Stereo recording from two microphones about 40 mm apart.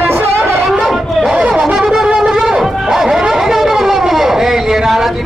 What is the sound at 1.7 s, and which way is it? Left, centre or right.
Wind instrument, centre.